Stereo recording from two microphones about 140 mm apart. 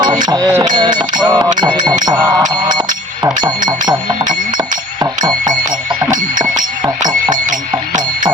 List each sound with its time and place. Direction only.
0.0 s music: 30° right (ahead or behind)
0.5 s a sound: 30° right (ahead or behind)
1.6 s bell: 30° right (ahead or behind)
2.6 s a sound: 30° right (ahead or behind)
4.3 s bell: 30° right (ahead or behind)
6.8 s bicycle bell: 30° right (ahead or behind)